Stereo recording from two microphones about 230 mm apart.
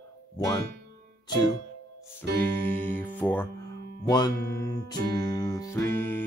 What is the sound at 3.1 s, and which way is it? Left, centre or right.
Speech, centre.